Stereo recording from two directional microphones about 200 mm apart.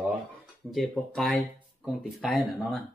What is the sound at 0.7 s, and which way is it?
Speech, centre (ahead or behind).